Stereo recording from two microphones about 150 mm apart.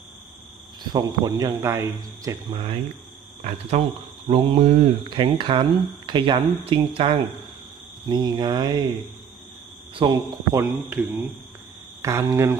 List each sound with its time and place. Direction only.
0.9 s speech: 25° right (ahead or behind)
2.5 s speech: 35° right (ahead or behind)
10.0 s speech: 35° right (ahead or behind)
10.5 s speech: 15° right (ahead or behind)